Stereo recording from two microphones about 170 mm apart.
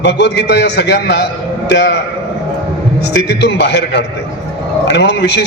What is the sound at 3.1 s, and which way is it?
A man's voice, 85° left.